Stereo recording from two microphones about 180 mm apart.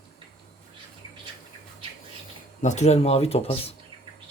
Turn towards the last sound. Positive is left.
turn(degrees=35)  # may be behind; listen again after turning